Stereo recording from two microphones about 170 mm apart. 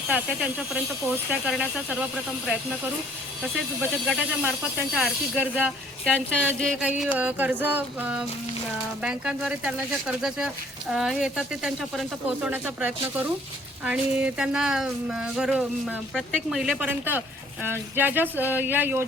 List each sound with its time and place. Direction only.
0.1 s speech: 5° right (ahead or behind)
3.8 s speech: 5° right (ahead or behind)
6.6 s speech: 5° left (ahead or behind)
7.0 s speech: 10° right (ahead or behind)